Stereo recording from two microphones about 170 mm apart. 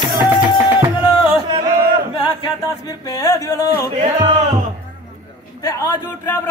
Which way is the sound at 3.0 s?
20° left (ahead or behind).